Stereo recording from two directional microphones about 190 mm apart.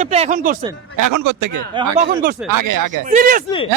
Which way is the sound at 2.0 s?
45° right (ahead or behind).